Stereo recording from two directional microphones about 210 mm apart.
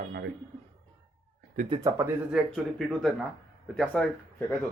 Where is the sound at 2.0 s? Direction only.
Centre (ahead or behind).